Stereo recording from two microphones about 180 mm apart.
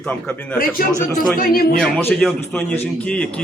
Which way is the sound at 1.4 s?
55° left (ahead or behind).